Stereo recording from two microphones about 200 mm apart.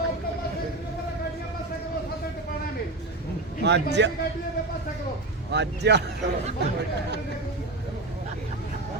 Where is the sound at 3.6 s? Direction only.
60° right (ahead or behind).